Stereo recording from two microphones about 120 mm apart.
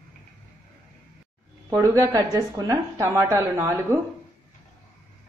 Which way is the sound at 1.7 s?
25° right (ahead or behind).